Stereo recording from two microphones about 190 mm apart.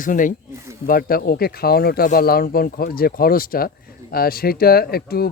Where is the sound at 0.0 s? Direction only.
45° left (ahead or behind).